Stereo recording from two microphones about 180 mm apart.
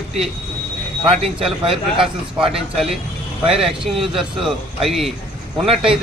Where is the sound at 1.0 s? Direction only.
30° right (ahead or behind).